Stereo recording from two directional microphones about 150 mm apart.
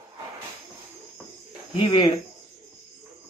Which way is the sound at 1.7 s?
35° left (ahead or behind).